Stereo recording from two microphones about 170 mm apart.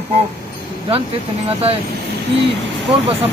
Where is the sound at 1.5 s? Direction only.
35° right (ahead or behind).